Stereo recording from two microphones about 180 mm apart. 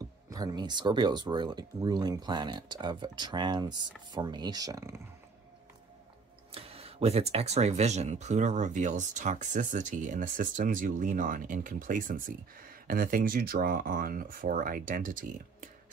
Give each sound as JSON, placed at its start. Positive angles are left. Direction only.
{"t": 0.3, "sound": "speech", "side_deg": -20}
{"t": 6.5, "sound": "speech", "side_deg": -35}